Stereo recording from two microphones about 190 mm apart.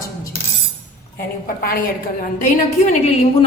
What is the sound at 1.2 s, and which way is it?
A woman's voice, 50° left (ahead or behind).